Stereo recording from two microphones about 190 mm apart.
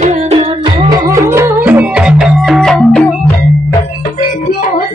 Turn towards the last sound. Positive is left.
turn(degrees=5)  # may be behind; listen again after turning